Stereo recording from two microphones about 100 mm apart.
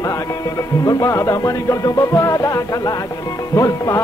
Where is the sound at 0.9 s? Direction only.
35° left (ahead or behind).